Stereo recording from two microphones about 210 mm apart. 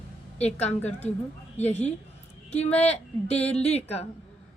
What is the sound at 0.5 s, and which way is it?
Speech, 30° left (ahead or behind).